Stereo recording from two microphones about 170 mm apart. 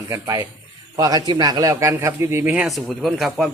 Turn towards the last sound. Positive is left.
turn(degrees=0)  # may be behind; listen again after turning